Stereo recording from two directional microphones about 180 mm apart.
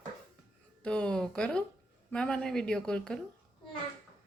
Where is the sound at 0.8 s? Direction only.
5° left (ahead or behind).